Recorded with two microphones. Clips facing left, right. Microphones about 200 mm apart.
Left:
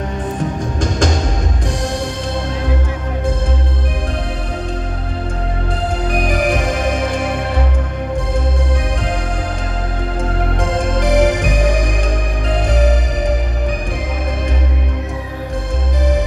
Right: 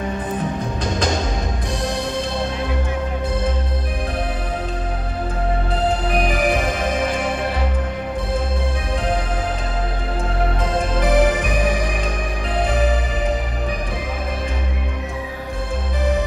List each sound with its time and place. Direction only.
6.0 s music: 45° left (ahead or behind)
11.0 s music: 75° left (ahead or behind)